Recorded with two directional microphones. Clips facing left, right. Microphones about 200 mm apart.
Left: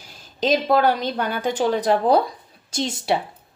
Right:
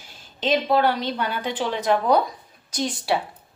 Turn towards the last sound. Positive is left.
turn(degrees=20)  # may be behind; listen again after turning